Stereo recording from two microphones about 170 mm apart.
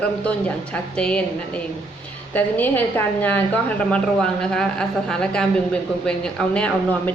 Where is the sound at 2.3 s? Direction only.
10° left (ahead or behind).